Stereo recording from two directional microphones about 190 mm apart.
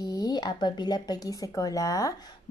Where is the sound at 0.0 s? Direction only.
20° left (ahead or behind).